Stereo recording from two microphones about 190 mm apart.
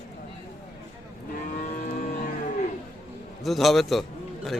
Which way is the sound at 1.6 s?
45° left (ahead or behind).